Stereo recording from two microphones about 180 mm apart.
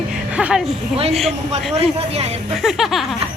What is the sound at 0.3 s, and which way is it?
Speech, 5° right (ahead or behind).